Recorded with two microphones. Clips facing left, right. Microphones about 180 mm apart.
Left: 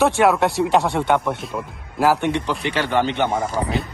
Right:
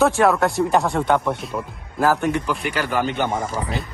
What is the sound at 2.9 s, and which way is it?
Speech, 25° left (ahead or behind).